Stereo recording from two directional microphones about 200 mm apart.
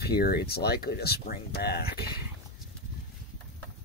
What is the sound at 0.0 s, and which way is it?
Speech, 50° left (ahead or behind).